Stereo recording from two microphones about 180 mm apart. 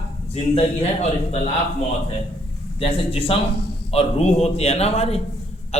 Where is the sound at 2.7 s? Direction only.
30° left (ahead or behind).